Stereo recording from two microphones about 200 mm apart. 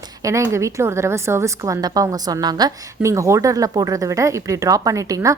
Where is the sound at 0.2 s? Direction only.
15° right (ahead or behind).